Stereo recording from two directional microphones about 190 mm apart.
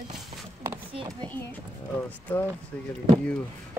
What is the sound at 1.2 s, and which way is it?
Speech, 10° left (ahead or behind).